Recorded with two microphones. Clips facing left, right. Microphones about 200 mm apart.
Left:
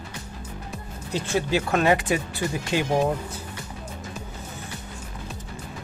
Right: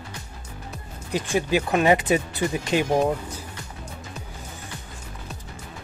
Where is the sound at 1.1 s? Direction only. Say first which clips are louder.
Right 1 dB; 15° right (ahead or behind).